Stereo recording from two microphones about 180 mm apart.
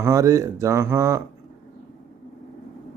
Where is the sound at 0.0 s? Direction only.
15° right (ahead or behind).